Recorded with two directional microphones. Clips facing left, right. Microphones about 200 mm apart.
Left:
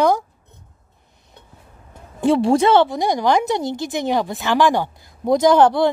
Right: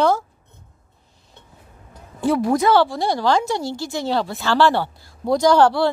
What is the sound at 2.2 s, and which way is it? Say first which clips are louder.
A woman's voice: left 3 dB; 25° left (ahead or behind).